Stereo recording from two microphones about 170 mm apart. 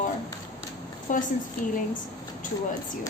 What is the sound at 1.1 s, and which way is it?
Speech, 50° left (ahead or behind).